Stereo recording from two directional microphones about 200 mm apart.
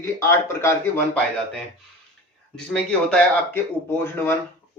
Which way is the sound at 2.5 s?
5° left (ahead or behind).